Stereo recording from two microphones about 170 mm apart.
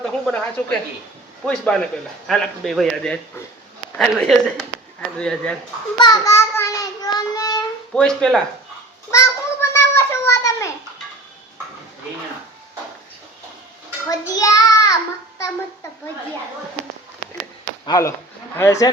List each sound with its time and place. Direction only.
0.0 s a man's voice: 5° left (ahead or behind)
6.0 s child singing: 20° left (ahead or behind)
7.9 s a man's voice: 5° left (ahead or behind)
9.0 s cat: 15° left (ahead or behind)
14.3 s child singing: 20° left (ahead or behind)
17.8 s speech: 20° left (ahead or behind)